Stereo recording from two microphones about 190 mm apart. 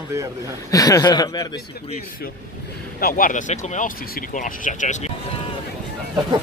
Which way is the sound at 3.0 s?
50° left (ahead or behind).